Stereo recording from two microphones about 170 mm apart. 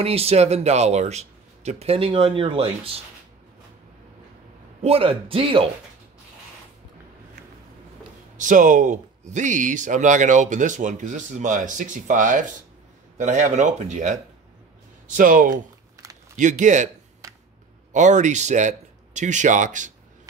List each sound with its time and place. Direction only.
0.0 s speech: 35° right (ahead or behind)
4.8 s speech: 35° right (ahead or behind)
8.4 s speech: 50° right (ahead or behind)
15.1 s speech: 50° right (ahead or behind)
15.5 s a sound: 20° right (ahead or behind)
16.3 s speech: 45° right (ahead or behind)
17.9 s speech: 45° right (ahead or behind)